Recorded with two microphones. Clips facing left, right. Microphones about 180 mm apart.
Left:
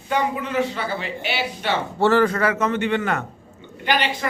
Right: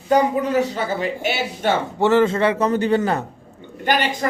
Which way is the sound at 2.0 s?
20° right (ahead or behind).